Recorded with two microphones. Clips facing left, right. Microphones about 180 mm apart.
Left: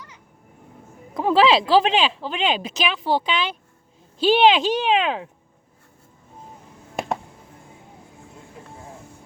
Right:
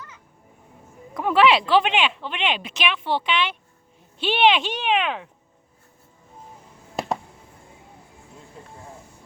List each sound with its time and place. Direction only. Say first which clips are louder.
1.1 s speech: left 1 dB; 30° left (ahead or behind)